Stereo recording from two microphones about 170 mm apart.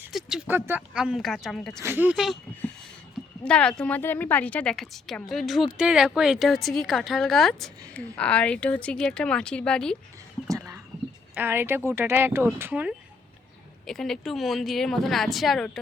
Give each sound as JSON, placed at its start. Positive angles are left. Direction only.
{"t": 0.0, "sound": "a woman's voice", "side_deg": -5}
{"t": 1.8, "sound": "speech", "side_deg": -10}
{"t": 3.4, "sound": "a woman's voice", "side_deg": 5}
{"t": 10.5, "sound": "a sound", "side_deg": -20}
{"t": 11.3, "sound": "speech", "side_deg": -10}
{"t": 13.8, "sound": "a woman's voice", "side_deg": 0}